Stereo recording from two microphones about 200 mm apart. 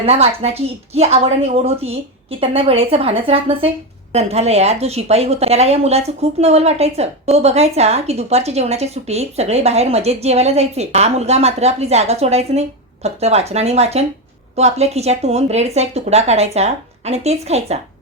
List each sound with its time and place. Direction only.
0.0 s a woman's voice: 30° right (ahead or behind)